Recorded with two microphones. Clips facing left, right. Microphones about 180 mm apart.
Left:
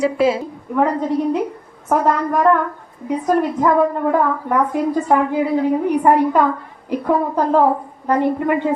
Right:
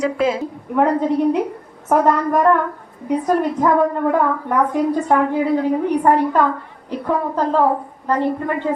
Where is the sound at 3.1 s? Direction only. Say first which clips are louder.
Even; centre (ahead or behind).